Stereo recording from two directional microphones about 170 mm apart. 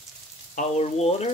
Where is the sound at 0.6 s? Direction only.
40° left (ahead or behind).